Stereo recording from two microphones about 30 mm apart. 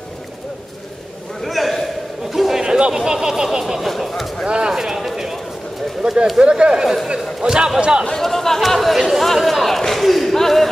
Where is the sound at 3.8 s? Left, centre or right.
Centre.